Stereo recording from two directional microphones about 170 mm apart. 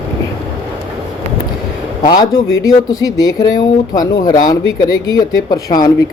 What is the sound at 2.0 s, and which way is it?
Speech, 25° left (ahead or behind).